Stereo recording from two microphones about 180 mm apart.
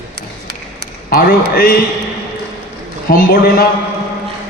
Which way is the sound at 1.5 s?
55° left (ahead or behind).